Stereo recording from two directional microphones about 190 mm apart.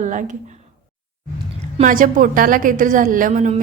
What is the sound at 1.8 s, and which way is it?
A woman's voice, 45° right (ahead or behind).